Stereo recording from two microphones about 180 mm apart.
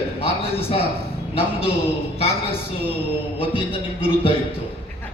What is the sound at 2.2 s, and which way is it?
A man's voice, 35° left (ahead or behind).